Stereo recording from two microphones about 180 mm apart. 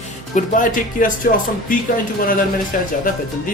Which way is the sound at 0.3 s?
45° left (ahead or behind).